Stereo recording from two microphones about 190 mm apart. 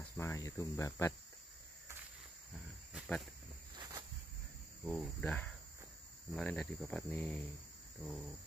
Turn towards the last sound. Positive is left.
turn(degrees=5)  # may be behind; listen again after turning